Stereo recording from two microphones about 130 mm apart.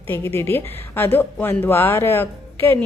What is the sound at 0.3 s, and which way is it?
A woman's voice, 15° left (ahead or behind).